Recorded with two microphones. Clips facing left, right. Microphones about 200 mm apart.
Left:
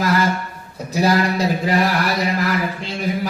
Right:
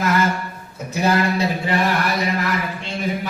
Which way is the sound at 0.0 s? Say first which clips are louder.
Left 1 dB; 35° left (ahead or behind).